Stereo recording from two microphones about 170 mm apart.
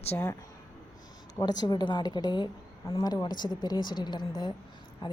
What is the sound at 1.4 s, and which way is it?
A woman's voice, 25° left (ahead or behind).